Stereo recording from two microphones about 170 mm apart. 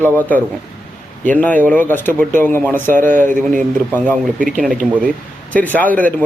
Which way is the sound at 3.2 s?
50° right (ahead or behind).